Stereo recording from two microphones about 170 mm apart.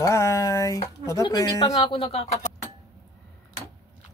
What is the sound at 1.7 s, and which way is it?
Speech, 35° left (ahead or behind).